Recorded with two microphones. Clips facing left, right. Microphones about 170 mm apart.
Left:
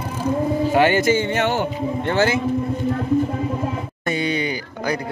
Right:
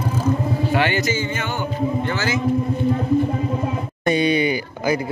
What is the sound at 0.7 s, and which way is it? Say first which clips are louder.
Speech: left 6 dB; 45° left (ahead or behind).